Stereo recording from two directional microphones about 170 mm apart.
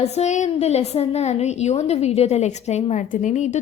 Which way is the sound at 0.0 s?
40° left (ahead or behind).